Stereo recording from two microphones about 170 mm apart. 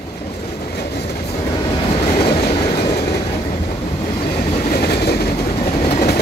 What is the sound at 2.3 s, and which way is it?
Train, 70° left (ahead or behind).